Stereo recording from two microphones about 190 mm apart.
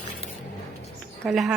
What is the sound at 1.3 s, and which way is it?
Speech, centre (ahead or behind).